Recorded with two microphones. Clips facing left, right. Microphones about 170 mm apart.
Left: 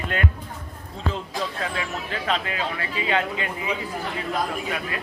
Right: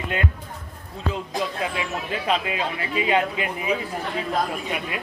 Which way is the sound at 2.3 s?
15° right (ahead or behind).